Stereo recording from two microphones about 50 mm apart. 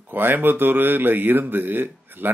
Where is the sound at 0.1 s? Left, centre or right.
Right.